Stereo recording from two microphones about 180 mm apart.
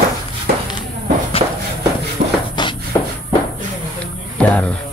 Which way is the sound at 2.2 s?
45° right (ahead or behind).